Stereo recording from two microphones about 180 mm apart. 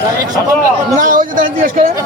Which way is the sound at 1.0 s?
50° right (ahead or behind).